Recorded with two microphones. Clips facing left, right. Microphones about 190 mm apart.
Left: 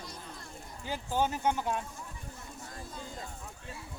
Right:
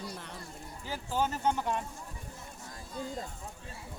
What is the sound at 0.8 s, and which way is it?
Speech, 15° left (ahead or behind).